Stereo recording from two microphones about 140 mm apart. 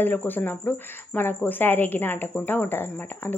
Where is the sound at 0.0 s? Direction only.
15° left (ahead or behind).